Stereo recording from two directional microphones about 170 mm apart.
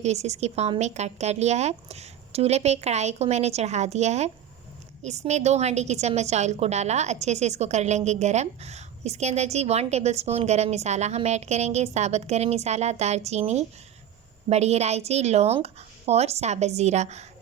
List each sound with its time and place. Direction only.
0.0 s a woman's voice: 40° right (ahead or behind)